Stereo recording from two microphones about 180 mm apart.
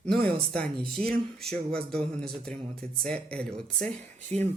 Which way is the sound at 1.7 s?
5° left (ahead or behind).